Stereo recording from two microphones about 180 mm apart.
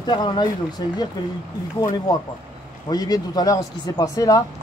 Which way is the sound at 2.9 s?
20° left (ahead or behind).